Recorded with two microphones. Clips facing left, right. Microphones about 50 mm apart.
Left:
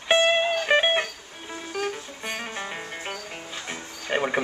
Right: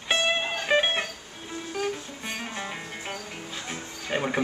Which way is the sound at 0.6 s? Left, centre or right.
Centre.